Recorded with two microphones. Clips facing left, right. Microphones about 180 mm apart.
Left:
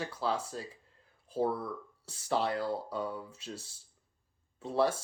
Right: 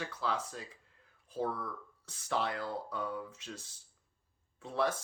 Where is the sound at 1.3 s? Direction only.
30° left (ahead or behind).